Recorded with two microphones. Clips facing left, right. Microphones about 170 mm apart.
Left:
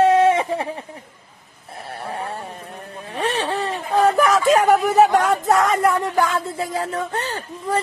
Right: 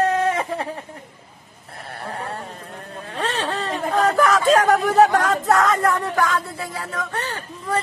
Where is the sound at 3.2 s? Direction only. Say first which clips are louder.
Left 2 dB; 15° left (ahead or behind).